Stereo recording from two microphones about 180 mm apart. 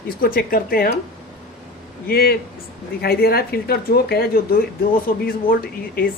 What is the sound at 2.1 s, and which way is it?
Speech, 55° left (ahead or behind).